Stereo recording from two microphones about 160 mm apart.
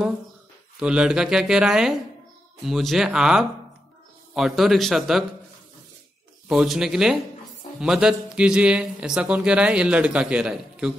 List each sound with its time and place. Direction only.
0.7 s speech: 5° right (ahead or behind)
6.5 s speech: centre (ahead or behind)